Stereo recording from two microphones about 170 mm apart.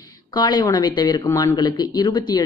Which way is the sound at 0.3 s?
25° left (ahead or behind).